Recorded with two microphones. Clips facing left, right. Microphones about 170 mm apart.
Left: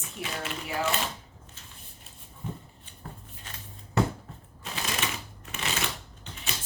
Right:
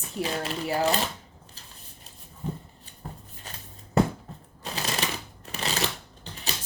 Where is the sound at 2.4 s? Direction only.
35° right (ahead or behind).